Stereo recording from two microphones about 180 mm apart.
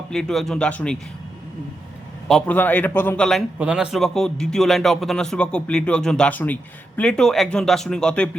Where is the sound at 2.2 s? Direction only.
Centre (ahead or behind).